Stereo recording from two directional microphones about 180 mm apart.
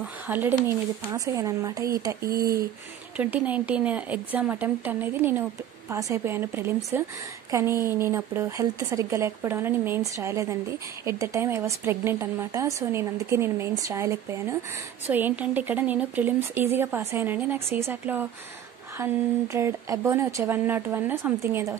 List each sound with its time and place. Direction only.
0.0 s speech: 10° right (ahead or behind)
2.2 s speech: 55° right (ahead or behind)
3.2 s speech: 10° right (ahead or behind)